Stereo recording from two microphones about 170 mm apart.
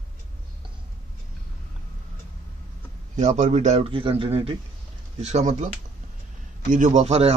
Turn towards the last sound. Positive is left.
turn(degrees=-35)  # may be behind; listen again after turning